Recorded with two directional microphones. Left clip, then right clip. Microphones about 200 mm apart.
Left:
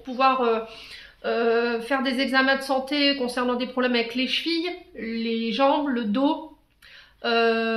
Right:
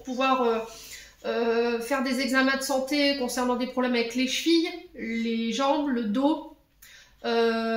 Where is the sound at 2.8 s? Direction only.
40° left (ahead or behind).